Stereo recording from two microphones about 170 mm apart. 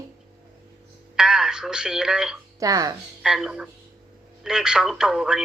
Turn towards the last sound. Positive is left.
turn(degrees=-5)  # may be behind; listen again after turning